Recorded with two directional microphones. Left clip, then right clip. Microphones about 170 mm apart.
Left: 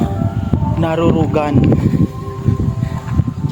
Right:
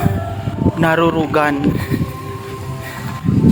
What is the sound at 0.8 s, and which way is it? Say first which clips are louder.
Speech: right 1 dB; 5° right (ahead or behind).